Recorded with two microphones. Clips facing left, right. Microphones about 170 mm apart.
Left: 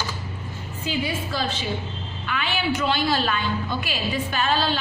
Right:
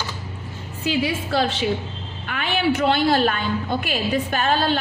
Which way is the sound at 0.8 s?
80° right.